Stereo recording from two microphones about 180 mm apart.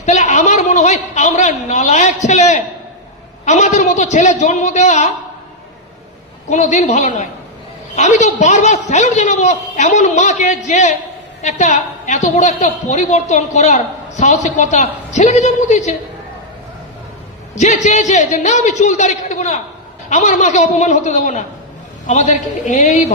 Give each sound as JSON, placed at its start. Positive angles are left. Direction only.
{"t": 0.0, "sound": "a sound", "side_deg": 40}
{"t": 2.2, "sound": "a man's voice", "side_deg": 40}
{"t": 6.5, "sound": "a woman's voice", "side_deg": 40}
{"t": 17.5, "sound": "a woman's voice", "side_deg": 40}